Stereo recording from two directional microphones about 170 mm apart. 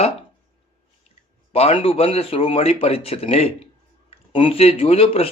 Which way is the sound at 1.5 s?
35° left (ahead or behind).